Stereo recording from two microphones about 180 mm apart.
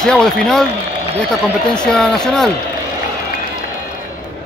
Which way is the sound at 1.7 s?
5° left (ahead or behind).